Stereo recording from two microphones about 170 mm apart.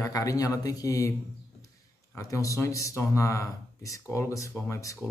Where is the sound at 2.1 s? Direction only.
20° left (ahead or behind).